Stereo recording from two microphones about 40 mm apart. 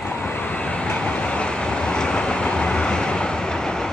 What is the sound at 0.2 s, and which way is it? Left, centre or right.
Vehicle, left.